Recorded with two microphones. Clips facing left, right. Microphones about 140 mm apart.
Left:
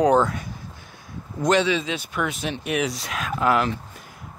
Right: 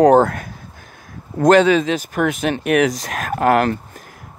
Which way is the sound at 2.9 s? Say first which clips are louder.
Right 5 dB; 45° right (ahead or behind).